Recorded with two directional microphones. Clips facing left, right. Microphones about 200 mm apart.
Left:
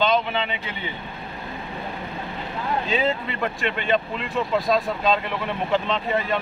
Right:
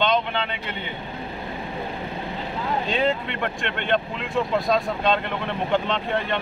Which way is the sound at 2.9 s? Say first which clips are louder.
Right 1 dB; 5° left (ahead or behind).